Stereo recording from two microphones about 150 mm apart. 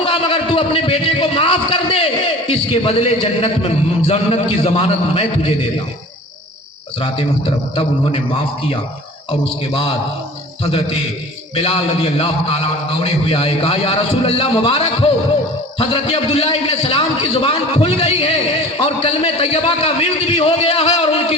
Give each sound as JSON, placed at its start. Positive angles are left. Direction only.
{"t": 0.0, "sound": "a sound", "side_deg": 35}
{"t": 2.5, "sound": "a man's voice", "side_deg": 40}
{"t": 7.0, "sound": "a man's voice", "side_deg": 40}